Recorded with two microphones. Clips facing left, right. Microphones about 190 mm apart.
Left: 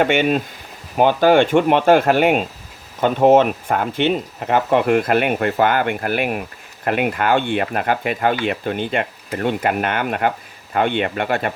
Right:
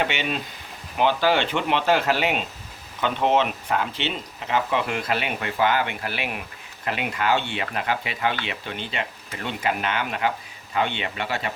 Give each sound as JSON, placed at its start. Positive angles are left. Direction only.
{"t": 0.0, "sound": "speech", "side_deg": 50}